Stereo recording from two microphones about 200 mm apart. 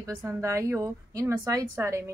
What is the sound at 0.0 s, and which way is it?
A woman's voice, 15° right (ahead or behind).